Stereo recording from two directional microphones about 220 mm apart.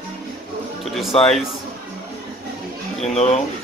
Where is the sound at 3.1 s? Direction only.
30° left (ahead or behind).